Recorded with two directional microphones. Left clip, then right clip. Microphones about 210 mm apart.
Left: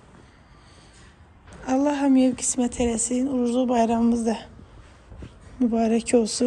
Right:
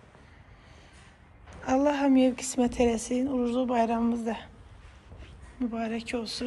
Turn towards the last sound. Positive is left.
turn(degrees=25)  # may be behind; listen again after turning